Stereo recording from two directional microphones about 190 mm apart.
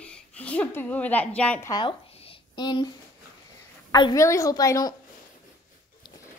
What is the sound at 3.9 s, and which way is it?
A woman's voice, 20° left (ahead or behind).